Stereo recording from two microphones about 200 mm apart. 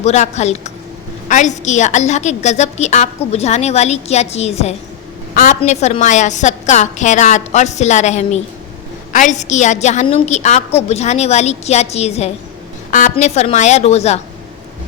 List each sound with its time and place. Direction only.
0.0 s a woman's voice: 35° left (ahead or behind)